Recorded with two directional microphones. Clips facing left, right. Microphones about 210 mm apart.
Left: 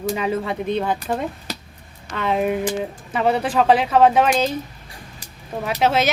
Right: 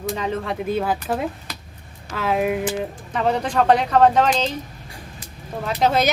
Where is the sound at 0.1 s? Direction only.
10° left (ahead or behind).